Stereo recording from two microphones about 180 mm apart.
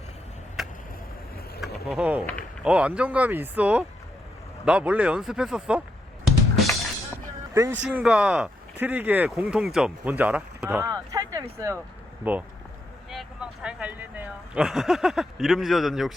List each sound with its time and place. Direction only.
0.6 s chop: centre (ahead or behind)
1.6 s vehicle: 5° right (ahead or behind)
2.6 s speech: 5° right (ahead or behind)
6.2 s drum kit: centre (ahead or behind)
7.5 s a man's voice: 15° right (ahead or behind)
7.9 s speech: 5° right (ahead or behind)